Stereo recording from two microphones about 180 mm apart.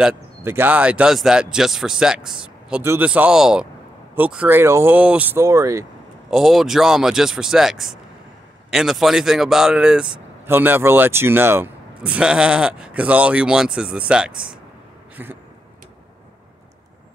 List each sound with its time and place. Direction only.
0.0 s speech: 10° right (ahead or behind)
6.3 s speech: centre (ahead or behind)